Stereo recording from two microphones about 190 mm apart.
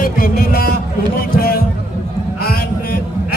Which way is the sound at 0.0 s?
50° left (ahead or behind).